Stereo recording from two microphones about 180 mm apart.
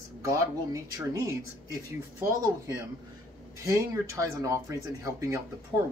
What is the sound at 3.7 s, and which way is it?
Speech, 20° right (ahead or behind).